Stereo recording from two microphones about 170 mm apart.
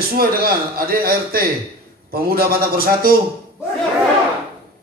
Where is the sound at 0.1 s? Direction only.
60° right (ahead or behind).